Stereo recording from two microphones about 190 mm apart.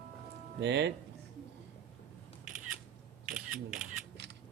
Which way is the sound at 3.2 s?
5° right (ahead or behind).